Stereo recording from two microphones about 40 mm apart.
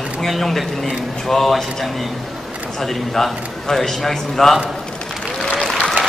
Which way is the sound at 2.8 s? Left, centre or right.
Centre.